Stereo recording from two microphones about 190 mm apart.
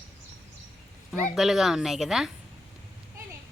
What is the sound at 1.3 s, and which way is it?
Speech, centre (ahead or behind).